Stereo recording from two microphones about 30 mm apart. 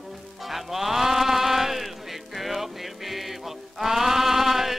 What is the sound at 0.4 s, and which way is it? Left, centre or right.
Music, centre.